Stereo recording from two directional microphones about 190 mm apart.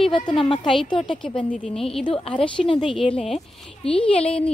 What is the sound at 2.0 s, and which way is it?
Speech, 30° left (ahead or behind).